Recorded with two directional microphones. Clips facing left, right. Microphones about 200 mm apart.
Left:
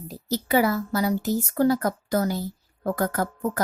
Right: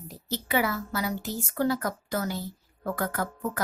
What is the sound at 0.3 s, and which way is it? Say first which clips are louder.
A woman's voice: left 6 dB; 40° left (ahead or behind).